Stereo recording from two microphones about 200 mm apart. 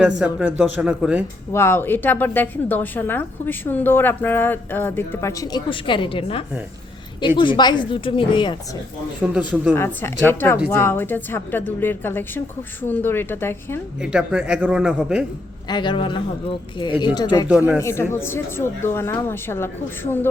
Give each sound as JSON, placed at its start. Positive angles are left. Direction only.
{"t": 0.3, "sound": "speech", "side_deg": -5}
{"t": 1.5, "sound": "a woman's voice", "side_deg": 10}
{"t": 9.3, "sound": "speech", "side_deg": -5}
{"t": 9.7, "sound": "a woman's voice", "side_deg": 10}
{"t": 14.0, "sound": "speech", "side_deg": -5}
{"t": 15.7, "sound": "a woman's voice", "side_deg": 25}